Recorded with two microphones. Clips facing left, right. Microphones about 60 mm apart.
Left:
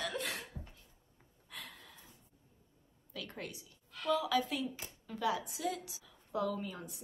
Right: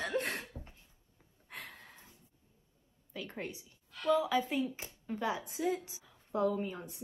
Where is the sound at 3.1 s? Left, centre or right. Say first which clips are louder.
Right 3 dB; right.